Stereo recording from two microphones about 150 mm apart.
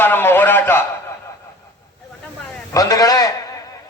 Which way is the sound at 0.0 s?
15° left (ahead or behind).